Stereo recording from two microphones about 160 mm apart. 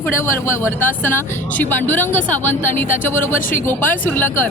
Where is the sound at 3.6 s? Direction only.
10° left (ahead or behind).